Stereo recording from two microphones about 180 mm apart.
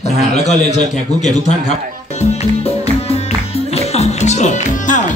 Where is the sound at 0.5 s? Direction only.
40° left (ahead or behind).